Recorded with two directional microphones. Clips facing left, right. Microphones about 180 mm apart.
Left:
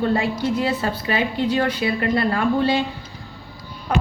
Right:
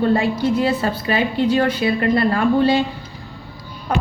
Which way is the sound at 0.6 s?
40° right (ahead or behind).